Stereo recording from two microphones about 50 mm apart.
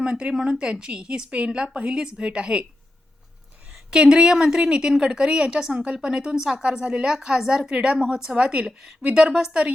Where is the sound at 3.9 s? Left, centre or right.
Centre.